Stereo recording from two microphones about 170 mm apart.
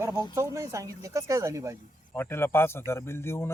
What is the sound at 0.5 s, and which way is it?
Speech, 20° right (ahead or behind).